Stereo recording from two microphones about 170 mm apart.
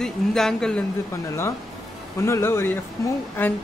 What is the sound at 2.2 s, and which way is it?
Speech, 15° left (ahead or behind).